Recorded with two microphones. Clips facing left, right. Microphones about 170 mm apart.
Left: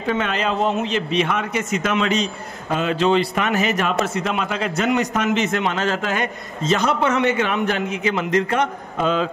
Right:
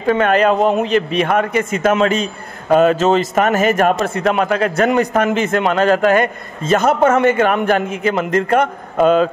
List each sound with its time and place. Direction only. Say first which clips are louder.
0.0 s a man's voice: right 8 dB; 50° right (ahead or behind)